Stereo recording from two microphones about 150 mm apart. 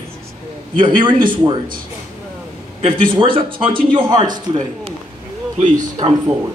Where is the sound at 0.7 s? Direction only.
30° right (ahead or behind).